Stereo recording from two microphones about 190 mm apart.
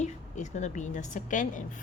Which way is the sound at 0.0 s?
40° left (ahead or behind).